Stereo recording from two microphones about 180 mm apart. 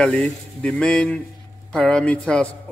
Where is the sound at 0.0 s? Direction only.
5° left (ahead or behind).